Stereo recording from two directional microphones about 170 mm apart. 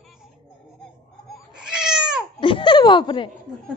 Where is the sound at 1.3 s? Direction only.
5° right (ahead or behind).